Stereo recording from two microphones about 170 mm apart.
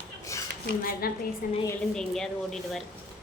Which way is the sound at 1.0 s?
60° left (ahead or behind).